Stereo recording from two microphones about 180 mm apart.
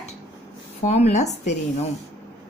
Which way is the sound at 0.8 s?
40° left (ahead or behind).